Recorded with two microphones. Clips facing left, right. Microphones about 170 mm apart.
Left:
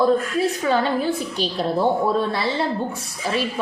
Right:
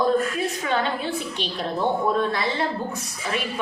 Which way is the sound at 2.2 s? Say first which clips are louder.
Left 1 dB; 30° left (ahead or behind).